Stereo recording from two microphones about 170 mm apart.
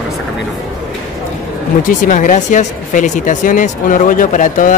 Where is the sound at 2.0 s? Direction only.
50° left (ahead or behind).